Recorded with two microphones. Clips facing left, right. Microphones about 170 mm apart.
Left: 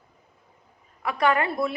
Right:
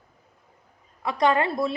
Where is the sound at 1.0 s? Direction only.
25° right (ahead or behind).